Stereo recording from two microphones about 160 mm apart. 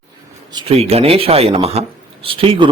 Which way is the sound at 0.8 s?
40° right (ahead or behind).